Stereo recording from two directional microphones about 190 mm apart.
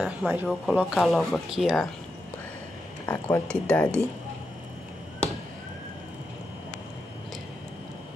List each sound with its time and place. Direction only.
0.0 s speech: 5° right (ahead or behind)
3.1 s speech: 10° left (ahead or behind)